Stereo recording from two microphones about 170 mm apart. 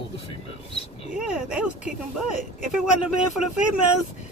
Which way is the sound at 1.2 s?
5° right (ahead or behind).